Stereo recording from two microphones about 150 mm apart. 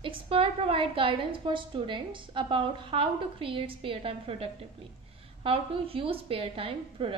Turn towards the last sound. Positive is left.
turn(degrees=-35)  # may be behind; listen again after turning